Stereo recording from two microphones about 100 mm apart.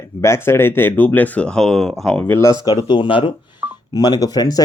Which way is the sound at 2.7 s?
55° left (ahead or behind).